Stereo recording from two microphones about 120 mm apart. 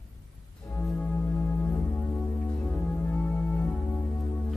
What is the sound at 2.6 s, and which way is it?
Music, 10° left (ahead or behind).